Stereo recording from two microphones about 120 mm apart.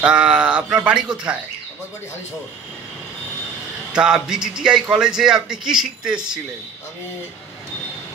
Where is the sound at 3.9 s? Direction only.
5° right (ahead or behind).